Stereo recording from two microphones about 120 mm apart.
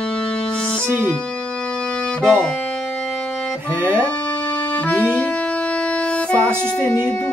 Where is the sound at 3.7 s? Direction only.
20° right (ahead or behind).